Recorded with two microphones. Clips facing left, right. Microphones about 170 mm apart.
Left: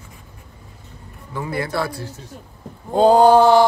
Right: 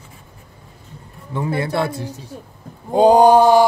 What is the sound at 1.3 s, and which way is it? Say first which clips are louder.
A woman's voice: right 3 dB; 25° right (ahead or behind).